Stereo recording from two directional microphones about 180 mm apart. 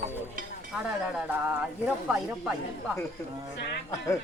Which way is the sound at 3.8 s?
15° left (ahead or behind).